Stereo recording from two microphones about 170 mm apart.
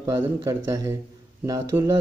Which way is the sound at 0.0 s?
20° right (ahead or behind).